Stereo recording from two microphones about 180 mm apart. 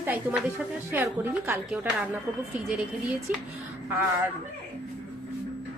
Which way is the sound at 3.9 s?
10° right (ahead or behind).